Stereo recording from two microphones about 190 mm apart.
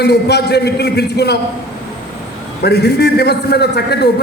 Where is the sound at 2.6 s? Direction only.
60° left (ahead or behind).